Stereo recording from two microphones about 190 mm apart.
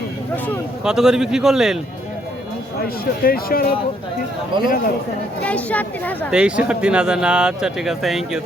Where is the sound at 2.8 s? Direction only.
50° left (ahead or behind).